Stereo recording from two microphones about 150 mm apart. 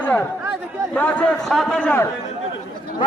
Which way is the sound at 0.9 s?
10° left (ahead or behind).